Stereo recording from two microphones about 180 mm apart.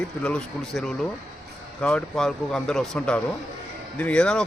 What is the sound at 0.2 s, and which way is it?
Speech, 5° left (ahead or behind).